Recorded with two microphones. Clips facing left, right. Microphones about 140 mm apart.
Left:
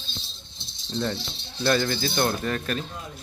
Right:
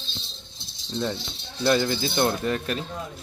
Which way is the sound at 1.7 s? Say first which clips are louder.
Right 1 dB; 15° right (ahead or behind).